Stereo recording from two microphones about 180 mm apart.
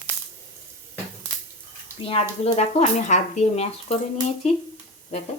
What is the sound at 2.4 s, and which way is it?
Speech, 40° left (ahead or behind).